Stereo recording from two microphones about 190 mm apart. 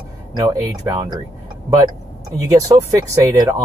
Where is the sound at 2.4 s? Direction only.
20° right (ahead or behind).